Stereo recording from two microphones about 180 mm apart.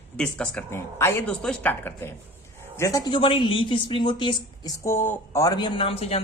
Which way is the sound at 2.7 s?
15° left (ahead or behind).